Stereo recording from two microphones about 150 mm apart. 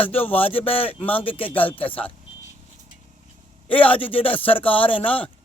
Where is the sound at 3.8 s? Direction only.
35° left (ahead or behind).